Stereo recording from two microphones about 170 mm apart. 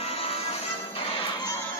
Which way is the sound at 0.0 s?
35° left (ahead or behind).